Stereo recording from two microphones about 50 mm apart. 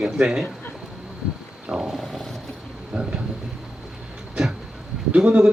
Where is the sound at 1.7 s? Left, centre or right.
Centre.